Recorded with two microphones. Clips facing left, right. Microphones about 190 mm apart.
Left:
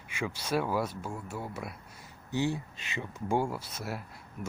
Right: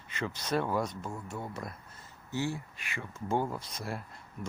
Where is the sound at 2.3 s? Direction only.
20° left (ahead or behind).